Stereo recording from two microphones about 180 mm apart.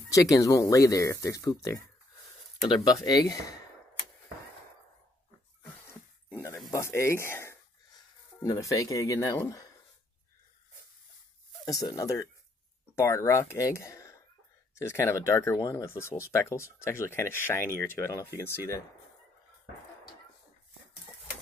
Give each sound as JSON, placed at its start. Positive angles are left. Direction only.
{"t": 0.1, "sound": "speech", "side_deg": 20}
{"t": 6.7, "sound": "speech", "side_deg": 15}
{"t": 11.9, "sound": "speech", "side_deg": 20}